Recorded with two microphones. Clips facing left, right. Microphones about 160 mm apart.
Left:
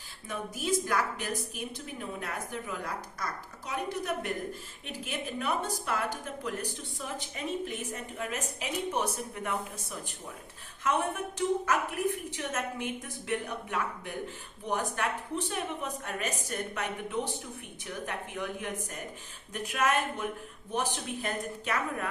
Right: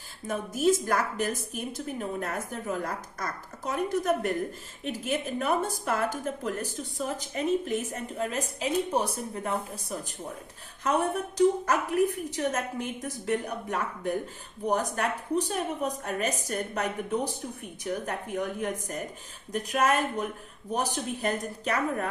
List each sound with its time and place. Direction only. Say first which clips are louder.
0.3 s a woman's voice: right 7 dB; 45° right (ahead or behind)